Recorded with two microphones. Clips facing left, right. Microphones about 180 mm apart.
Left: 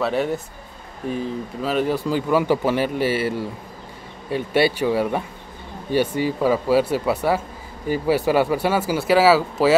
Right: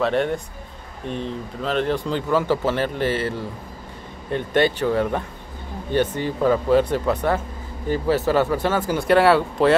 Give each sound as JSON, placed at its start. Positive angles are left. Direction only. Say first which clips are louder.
{"t": 0.0, "sound": "speech", "louder": "right 1 dB", "side_deg": 5}